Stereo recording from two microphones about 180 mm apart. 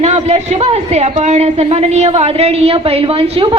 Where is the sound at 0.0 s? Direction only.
35° right (ahead or behind).